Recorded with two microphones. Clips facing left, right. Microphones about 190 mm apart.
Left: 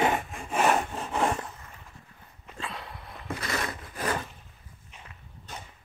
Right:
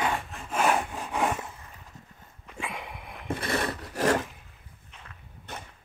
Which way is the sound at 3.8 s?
80° right.